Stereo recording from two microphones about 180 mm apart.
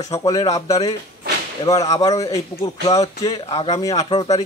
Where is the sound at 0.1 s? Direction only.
20° left (ahead or behind).